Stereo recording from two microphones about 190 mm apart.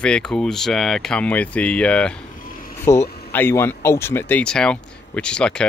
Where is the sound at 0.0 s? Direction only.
5° left (ahead or behind).